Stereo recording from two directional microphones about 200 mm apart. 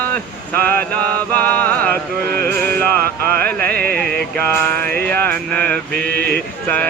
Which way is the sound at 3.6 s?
50° right (ahead or behind).